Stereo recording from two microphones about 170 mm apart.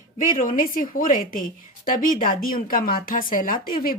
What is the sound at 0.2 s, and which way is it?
A woman's voice, 55° left (ahead or behind).